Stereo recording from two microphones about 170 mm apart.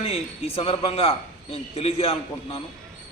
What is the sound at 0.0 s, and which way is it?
A man's voice, 35° left (ahead or behind).